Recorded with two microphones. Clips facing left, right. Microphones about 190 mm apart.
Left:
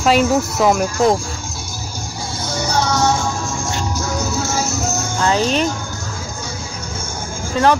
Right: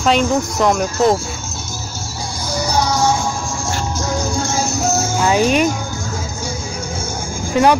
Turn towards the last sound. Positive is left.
turn(degrees=-15)  # may be behind; listen again after turning